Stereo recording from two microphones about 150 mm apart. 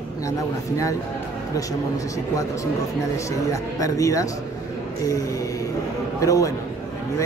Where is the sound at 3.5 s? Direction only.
20° left (ahead or behind).